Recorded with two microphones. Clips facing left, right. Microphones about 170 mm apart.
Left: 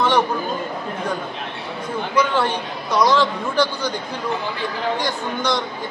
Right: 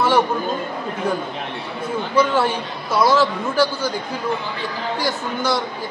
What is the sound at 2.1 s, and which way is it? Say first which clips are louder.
A man's voice: right 2 dB; 5° right (ahead or behind).